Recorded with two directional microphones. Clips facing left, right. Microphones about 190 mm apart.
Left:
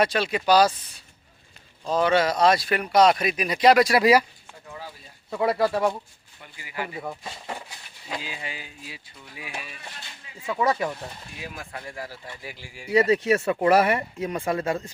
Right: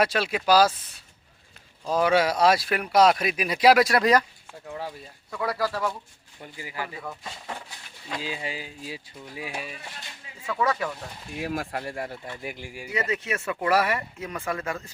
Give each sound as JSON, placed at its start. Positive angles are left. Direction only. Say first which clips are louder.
{"t": 0.0, "sound": "speech", "louder": "left 1 dB", "side_deg": -5}
{"t": 5.3, "sound": "speech", "louder": "left 5 dB", "side_deg": 25}
{"t": 6.4, "sound": "speech", "louder": "left 1 dB", "side_deg": -35}
{"t": 6.9, "sound": "speech", "louder": "left 3 dB", "side_deg": 25}
{"t": 8.2, "sound": "speech", "louder": "right 4 dB", "side_deg": -30}
{"t": 10.4, "sound": "speech", "louder": "left 2 dB", "side_deg": 15}
{"t": 11.3, "sound": "speech", "louder": "right 10 dB", "side_deg": -70}
{"t": 11.9, "sound": "speech", "louder": "right 3 dB", "side_deg": -25}
{"t": 12.4, "sound": "speech", "louder": "right 5 dB", "side_deg": -50}
{"t": 12.9, "sound": "speech", "louder": "left 9 dB", "side_deg": 35}